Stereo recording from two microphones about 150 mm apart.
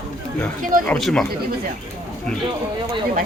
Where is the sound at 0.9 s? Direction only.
5° left (ahead or behind).